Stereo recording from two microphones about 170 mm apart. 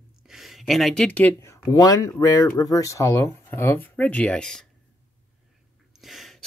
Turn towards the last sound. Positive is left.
turn(degrees=0)  # may be behind; listen again after turning